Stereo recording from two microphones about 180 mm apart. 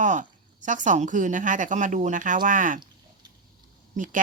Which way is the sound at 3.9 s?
45° right (ahead or behind).